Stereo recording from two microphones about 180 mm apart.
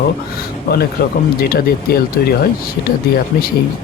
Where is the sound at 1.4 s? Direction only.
55° left (ahead or behind).